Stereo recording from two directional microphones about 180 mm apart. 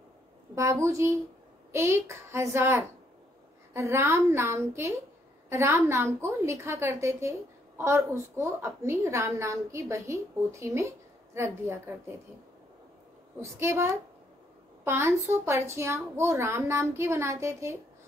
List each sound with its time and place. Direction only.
0.6 s a woman's voice: 15° right (ahead or behind)
13.4 s a woman's voice: 15° right (ahead or behind)